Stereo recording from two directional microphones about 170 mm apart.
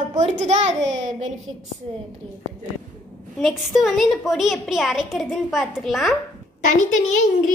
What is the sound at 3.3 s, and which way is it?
A woman's voice, centre (ahead or behind).